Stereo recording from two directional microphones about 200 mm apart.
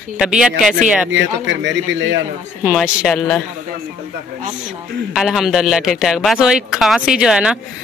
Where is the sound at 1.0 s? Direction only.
65° right (ahead or behind).